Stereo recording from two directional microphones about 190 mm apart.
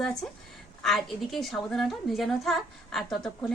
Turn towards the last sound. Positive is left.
turn(degrees=0)  # may be behind; listen again after turning